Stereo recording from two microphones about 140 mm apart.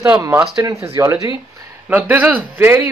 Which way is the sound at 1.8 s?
10° right (ahead or behind).